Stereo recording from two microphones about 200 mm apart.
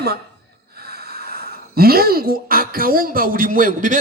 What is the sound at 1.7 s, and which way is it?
A man's voice, 50° right (ahead or behind).